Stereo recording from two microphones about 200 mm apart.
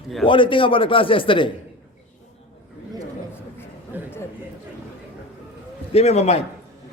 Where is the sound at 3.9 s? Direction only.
10° right (ahead or behind).